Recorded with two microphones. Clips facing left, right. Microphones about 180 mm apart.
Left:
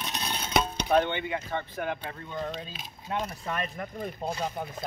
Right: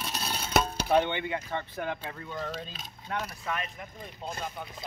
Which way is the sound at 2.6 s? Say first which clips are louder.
Left 1 dB; 5° left (ahead or behind).